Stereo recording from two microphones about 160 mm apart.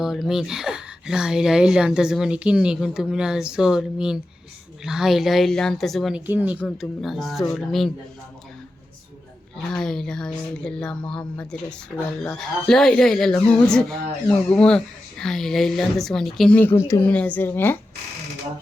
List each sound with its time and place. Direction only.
0.0 s speech: centre (ahead or behind)
6.2 s speech: 10° right (ahead or behind)
6.6 s speech: centre (ahead or behind)
9.6 s a woman's voice: 5° left (ahead or behind)